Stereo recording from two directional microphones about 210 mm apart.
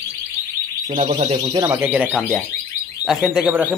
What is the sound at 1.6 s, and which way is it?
Speech, 10° right (ahead or behind).